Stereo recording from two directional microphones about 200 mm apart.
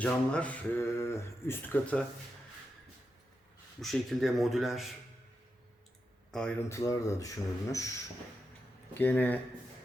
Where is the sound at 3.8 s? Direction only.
Centre (ahead or behind).